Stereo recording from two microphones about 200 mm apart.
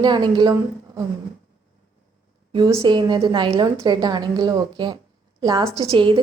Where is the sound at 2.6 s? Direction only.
20° right (ahead or behind).